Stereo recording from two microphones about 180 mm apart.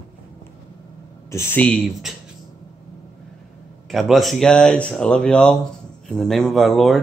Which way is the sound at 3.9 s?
Centre (ahead or behind).